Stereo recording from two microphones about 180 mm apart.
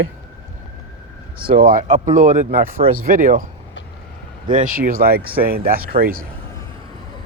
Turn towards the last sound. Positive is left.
turn(degrees=-55)  # may be behind; listen again after turning